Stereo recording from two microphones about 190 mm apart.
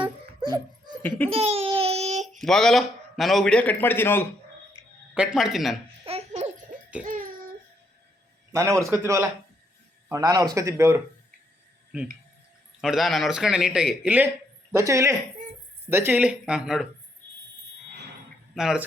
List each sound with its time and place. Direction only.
0.0 s a sound: 20° right (ahead or behind)
1.3 s babbling: 30° right (ahead or behind)
2.4 s a man's voice: centre (ahead or behind)
5.1 s a man's voice: 5° right (ahead or behind)
6.1 s baby laughter: 35° right (ahead or behind)
7.0 s speech: 45° right (ahead or behind)
8.5 s speech: 15° right (ahead or behind)
12.8 s a man's voice: centre (ahead or behind)
18.5 s a man's voice: 5° right (ahead or behind)